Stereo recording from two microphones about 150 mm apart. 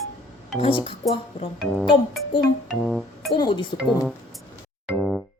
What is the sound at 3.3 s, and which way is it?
Speech, 30° left (ahead or behind).